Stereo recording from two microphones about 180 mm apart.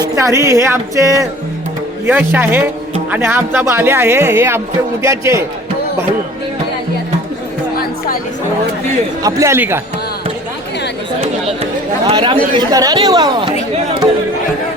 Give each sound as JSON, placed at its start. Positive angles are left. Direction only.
{"t": 0.2, "sound": "speech", "side_deg": -20}
{"t": 2.3, "sound": "speech", "side_deg": -10}
{"t": 9.2, "sound": "speech", "side_deg": -15}
{"t": 12.0, "sound": "speech", "side_deg": -30}